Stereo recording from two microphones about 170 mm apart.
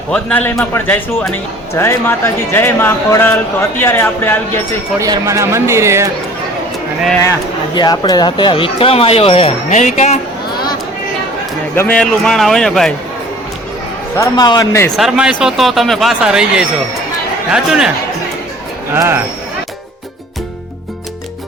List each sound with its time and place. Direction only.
0.1 s speech: 10° left (ahead or behind)
4.9 s speech: 20° right (ahead or behind)
7.8 s speech: 25° left (ahead or behind); by 10.2 s 45° left (ahead or behind)
11.7 s speech: 10° left (ahead or behind)
14.2 s a man's voice: 25° left (ahead or behind)
14.8 s speech: centre (ahead or behind)
18.9 s speech: 15° right (ahead or behind)